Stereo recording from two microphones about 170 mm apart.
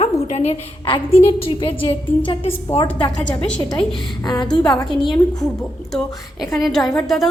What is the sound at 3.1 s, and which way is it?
Speech, 5° left (ahead or behind).